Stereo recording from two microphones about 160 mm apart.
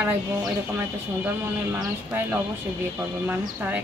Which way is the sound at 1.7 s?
10° right (ahead or behind).